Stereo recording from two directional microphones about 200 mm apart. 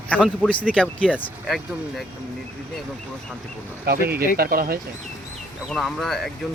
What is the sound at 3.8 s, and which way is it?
Speech, 50° right (ahead or behind).